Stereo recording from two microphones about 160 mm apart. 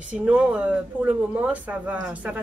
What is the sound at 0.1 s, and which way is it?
Speech, 5° right (ahead or behind).